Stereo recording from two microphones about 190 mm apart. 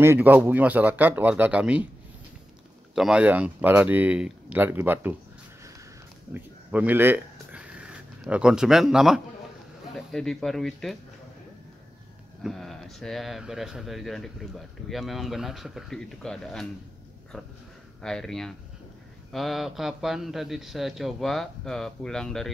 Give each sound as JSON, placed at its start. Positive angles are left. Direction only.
{"t": 0.0, "sound": "speech", "side_deg": -10}
{"t": 2.9, "sound": "speech", "side_deg": -5}
{"t": 6.3, "sound": "a sound", "side_deg": -10}
{"t": 9.9, "sound": "speech", "side_deg": 0}
{"t": 12.4, "sound": "speech", "side_deg": 0}
{"t": 18.0, "sound": "speech", "side_deg": 0}